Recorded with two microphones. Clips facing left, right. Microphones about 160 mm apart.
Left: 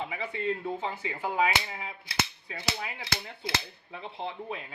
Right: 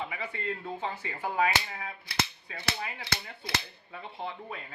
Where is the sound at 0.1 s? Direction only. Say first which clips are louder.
Left 4 dB; 15° left (ahead or behind).